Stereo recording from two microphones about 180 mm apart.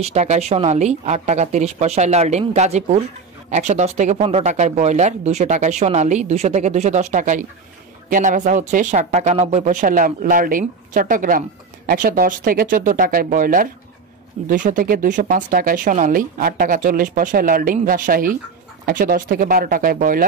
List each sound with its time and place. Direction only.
0.0 s speech: 35° right (ahead or behind)